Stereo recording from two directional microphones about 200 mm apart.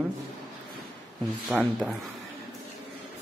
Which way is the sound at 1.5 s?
5° right (ahead or behind).